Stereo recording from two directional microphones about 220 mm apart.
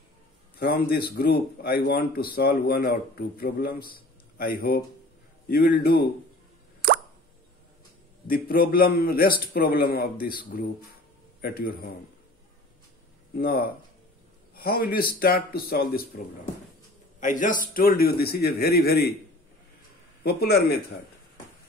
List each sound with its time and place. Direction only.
0.6 s speech: 45° left (ahead or behind)
8.3 s a man's voice: 40° left (ahead or behind)
11.4 s speech: 45° left (ahead or behind)
13.4 s speech: 45° left (ahead or behind)
14.5 s a sound: 45° left (ahead or behind)
15.0 s speech: 40° left (ahead or behind)
17.2 s speech: 35° left (ahead or behind)
20.2 s speech: 45° left (ahead or behind)